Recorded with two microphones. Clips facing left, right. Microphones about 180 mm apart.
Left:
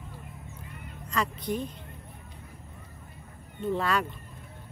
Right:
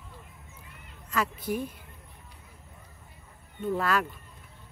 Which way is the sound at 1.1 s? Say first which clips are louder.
Even; 5° right (ahead or behind).